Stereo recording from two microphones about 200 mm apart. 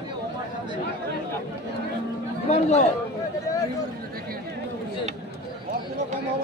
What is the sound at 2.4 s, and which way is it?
Speech, 35° left (ahead or behind).